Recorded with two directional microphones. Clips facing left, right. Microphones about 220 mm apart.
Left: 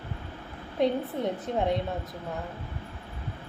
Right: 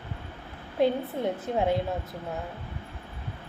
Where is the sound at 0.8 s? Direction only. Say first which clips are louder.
Right 1 dB; 5° right (ahead or behind).